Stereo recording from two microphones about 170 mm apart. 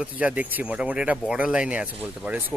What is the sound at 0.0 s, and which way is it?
Speech, 5° right (ahead or behind).